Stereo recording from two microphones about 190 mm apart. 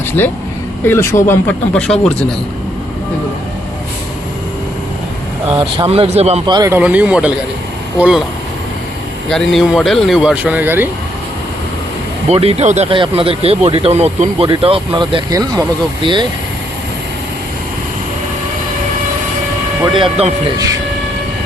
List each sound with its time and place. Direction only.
0.9 s speech: 10° left (ahead or behind)
5.5 s speech: 25° right (ahead or behind)
6.5 s speech: 15° right (ahead or behind)
9.3 s speech: centre (ahead or behind)
12.3 s speech: 30° right (ahead or behind)
19.8 s speech: 25° right (ahead or behind)